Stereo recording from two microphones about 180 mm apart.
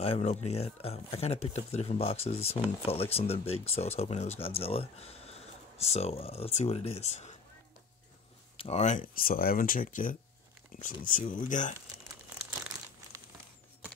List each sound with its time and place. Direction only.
0.0 s speech: 35° left (ahead or behind)
8.5 s speech: 35° left (ahead or behind)